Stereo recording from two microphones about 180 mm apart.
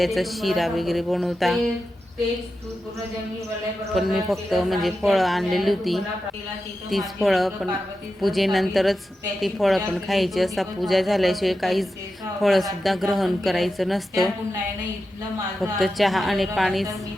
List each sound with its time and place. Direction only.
0.0 s a woman's voice: centre (ahead or behind)
3.9 s a woman's voice: centre (ahead or behind)
15.8 s a woman's voice: centre (ahead or behind)